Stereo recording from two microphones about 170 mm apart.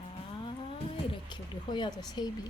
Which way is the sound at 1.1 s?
25° left (ahead or behind).